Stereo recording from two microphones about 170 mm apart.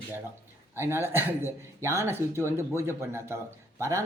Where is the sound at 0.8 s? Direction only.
15° right (ahead or behind).